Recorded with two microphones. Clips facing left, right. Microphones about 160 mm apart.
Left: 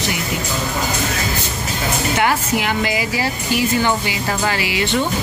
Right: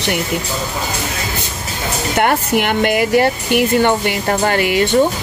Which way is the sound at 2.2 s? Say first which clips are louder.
Right 5 dB; 60° right (ahead or behind).